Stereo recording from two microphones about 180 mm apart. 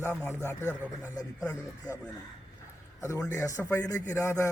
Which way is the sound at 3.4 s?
15° left (ahead or behind).